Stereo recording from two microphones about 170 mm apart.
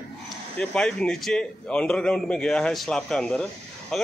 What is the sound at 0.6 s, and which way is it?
A man's voice, 5° left (ahead or behind).